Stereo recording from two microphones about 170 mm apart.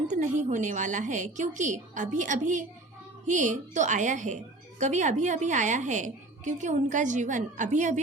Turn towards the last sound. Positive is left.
turn(degrees=-45)  # may be behind; listen again after turning